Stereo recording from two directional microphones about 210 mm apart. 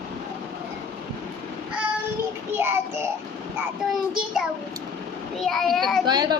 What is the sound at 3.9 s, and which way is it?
Child singing, centre (ahead or behind).